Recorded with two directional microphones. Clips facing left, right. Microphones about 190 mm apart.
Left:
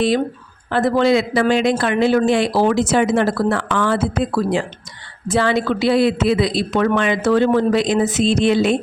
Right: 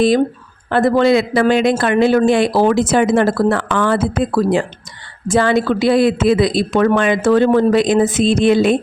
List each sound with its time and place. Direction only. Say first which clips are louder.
0.7 s speech: right 3 dB; 55° right (ahead or behind)